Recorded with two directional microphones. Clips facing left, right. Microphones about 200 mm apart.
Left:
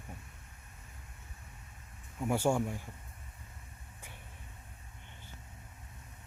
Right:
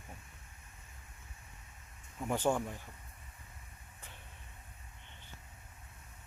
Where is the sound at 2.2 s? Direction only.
10° left (ahead or behind).